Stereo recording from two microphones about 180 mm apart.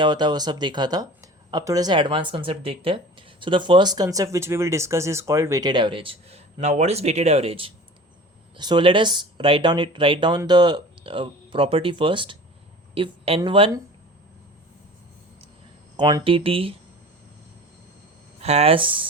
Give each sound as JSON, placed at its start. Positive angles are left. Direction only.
{"t": 0.0, "sound": "speech", "side_deg": -25}
{"t": 16.0, "sound": "speech", "side_deg": -25}
{"t": 18.3, "sound": "speech", "side_deg": -35}